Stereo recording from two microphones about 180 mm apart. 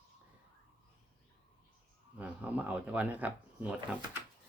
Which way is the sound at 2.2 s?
5° right (ahead or behind).